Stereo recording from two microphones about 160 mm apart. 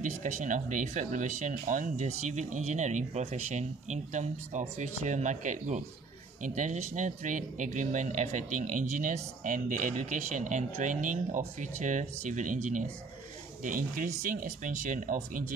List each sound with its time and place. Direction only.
0.0 s speech: 55° right (ahead or behind)